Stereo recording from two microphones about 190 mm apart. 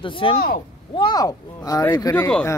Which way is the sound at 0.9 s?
25° left (ahead or behind).